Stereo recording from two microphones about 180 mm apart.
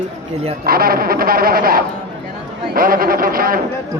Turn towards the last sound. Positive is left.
turn(degrees=-55)  # may be behind; listen again after turning